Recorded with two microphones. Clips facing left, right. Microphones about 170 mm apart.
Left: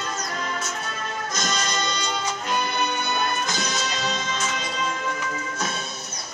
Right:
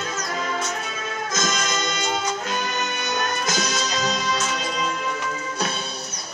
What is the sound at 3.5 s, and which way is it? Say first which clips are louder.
Music: right 3 dB; 40° right (ahead or behind).